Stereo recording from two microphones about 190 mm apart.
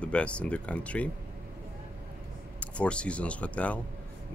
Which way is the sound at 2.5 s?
5° left (ahead or behind).